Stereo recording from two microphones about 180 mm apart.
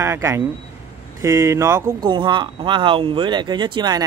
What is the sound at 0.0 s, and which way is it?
Speech, 15° right (ahead or behind).